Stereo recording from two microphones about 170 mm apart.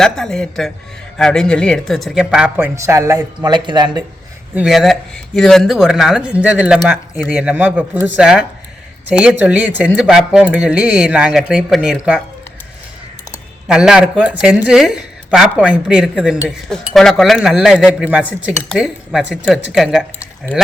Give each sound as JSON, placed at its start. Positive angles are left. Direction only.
{"t": 0.0, "sound": "a woman's voice", "side_deg": 5}
{"t": 2.7, "sound": "speech", "side_deg": -15}
{"t": 4.5, "sound": "a woman's voice", "side_deg": 0}
{"t": 13.7, "sound": "a woman's voice", "side_deg": -5}